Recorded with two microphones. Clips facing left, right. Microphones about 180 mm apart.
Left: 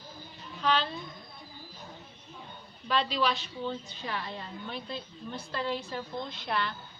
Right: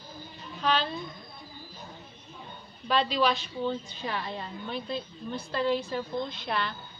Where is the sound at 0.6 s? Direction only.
10° right (ahead or behind).